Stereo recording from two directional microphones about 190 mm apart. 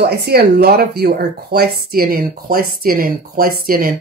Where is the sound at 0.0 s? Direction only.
55° right (ahead or behind).